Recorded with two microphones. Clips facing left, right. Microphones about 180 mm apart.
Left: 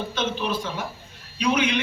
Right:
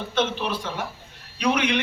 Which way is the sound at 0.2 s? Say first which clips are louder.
Right 2 dB; 60° right (ahead or behind).